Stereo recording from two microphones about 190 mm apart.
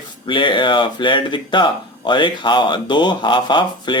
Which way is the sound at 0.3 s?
25° left (ahead or behind).